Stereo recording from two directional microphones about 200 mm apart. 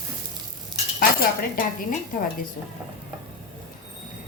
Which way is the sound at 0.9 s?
45° left (ahead or behind).